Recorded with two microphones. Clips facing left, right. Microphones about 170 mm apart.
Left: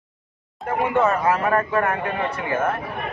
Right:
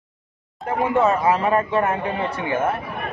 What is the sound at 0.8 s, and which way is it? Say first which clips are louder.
A man's voice: right 1 dB; 25° right (ahead or behind).